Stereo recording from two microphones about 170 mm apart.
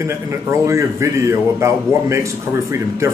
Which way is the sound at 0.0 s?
15° right (ahead or behind).